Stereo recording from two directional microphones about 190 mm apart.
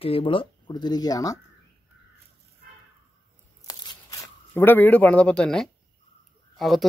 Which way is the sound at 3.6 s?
20° left (ahead or behind).